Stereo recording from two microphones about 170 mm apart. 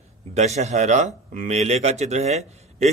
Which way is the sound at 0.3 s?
40° right (ahead or behind).